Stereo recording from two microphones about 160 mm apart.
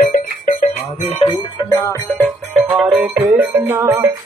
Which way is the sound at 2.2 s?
Centre (ahead or behind).